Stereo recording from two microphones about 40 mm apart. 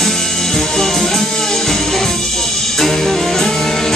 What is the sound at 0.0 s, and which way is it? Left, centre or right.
Music, centre.